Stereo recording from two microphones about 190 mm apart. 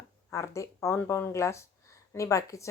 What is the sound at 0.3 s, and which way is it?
Speech, 15° left (ahead or behind).